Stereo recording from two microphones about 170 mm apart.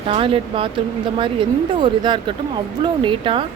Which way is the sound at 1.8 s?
30° right (ahead or behind).